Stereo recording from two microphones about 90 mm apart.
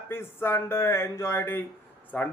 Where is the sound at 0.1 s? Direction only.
25° left (ahead or behind).